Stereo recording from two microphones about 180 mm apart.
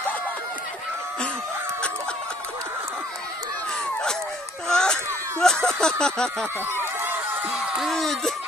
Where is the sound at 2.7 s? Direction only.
10° right (ahead or behind).